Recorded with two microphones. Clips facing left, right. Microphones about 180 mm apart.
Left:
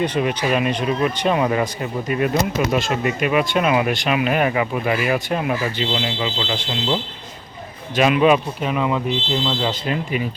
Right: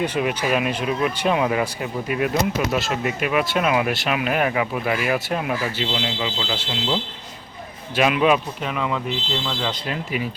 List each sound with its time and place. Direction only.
0.0 s speech: 5° right (ahead or behind)
9.5 s speech: 20° left (ahead or behind)
9.8 s speech: centre (ahead or behind)